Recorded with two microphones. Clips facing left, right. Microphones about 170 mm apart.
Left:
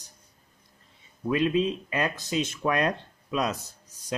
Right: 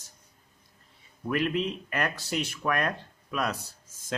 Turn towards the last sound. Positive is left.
turn(degrees=15)  # may be behind; listen again after turning